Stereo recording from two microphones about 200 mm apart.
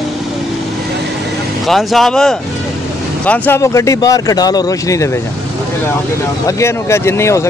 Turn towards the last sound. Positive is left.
turn(degrees=15)  # may be behind; listen again after turning